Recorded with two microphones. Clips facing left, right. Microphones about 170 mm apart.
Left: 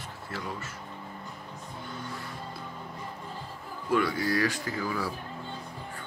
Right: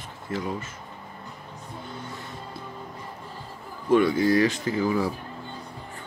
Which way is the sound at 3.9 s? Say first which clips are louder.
Right 7 dB; 20° right (ahead or behind).